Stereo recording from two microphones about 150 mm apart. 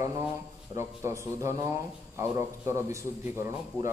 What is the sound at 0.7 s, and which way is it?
A man's voice, 20° right (ahead or behind).